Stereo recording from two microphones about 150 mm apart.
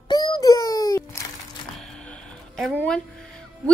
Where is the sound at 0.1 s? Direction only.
25° left (ahead or behind).